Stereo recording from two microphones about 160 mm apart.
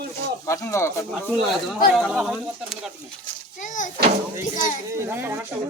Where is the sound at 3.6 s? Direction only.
55° left (ahead or behind).